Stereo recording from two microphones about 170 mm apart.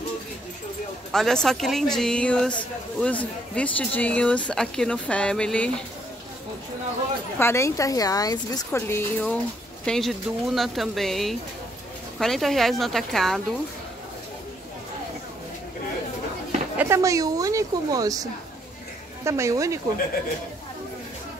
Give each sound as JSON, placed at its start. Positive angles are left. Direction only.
{"t": 1.1, "sound": "speech", "side_deg": 0}
{"t": 7.3, "sound": "speech", "side_deg": 15}
{"t": 16.7, "sound": "speech", "side_deg": -15}